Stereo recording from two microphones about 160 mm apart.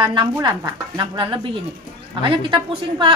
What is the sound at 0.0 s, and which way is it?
A woman's voice, 25° right (ahead or behind).